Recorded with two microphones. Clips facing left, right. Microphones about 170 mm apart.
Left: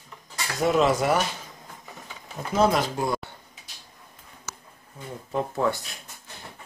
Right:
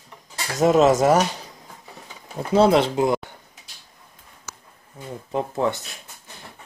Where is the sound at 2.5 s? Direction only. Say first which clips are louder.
Right 6 dB; 30° right (ahead or behind).